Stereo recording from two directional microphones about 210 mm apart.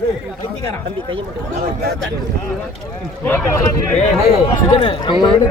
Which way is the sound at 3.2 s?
10° left (ahead or behind).